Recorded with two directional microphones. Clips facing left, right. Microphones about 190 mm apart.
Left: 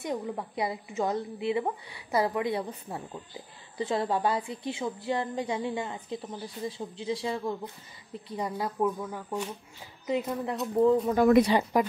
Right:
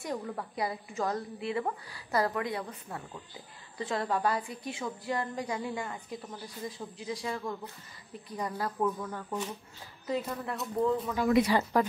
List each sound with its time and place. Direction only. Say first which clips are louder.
0.0 s a woman's voice: left 3 dB; 20° left (ahead or behind)
11.1 s speech: left 5 dB; 50° left (ahead or behind)
11.7 s speech: left 1 dB; 15° left (ahead or behind)